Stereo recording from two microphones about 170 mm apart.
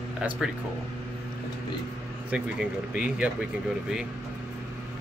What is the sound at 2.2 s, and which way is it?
Speech, 5° right (ahead or behind).